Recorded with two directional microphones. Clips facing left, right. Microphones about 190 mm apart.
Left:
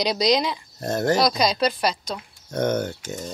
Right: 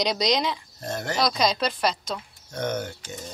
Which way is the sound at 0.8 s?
45° left (ahead or behind).